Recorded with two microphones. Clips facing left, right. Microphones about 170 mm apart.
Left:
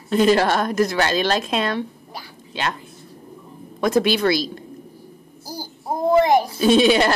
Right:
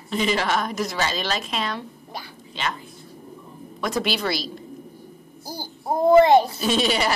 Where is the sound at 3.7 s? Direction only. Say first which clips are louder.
Left 7 dB; 55° left (ahead or behind).